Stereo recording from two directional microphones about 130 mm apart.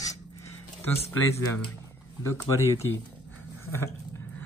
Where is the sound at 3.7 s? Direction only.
20° left (ahead or behind).